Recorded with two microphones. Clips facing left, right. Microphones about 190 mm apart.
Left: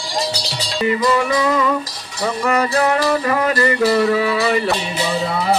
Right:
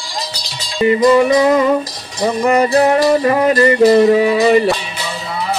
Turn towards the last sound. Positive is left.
turn(degrees=-20)  # may be behind; listen again after turning